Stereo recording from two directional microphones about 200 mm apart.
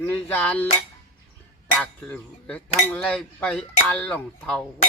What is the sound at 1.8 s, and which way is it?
Speech, 5° left (ahead or behind).